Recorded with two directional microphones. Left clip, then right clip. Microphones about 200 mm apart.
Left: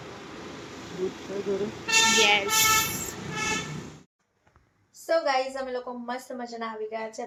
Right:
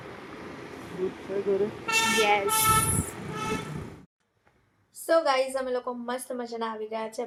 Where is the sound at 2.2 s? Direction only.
15° right (ahead or behind).